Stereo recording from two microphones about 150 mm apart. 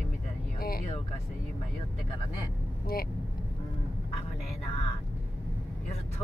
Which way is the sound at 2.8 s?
90° left.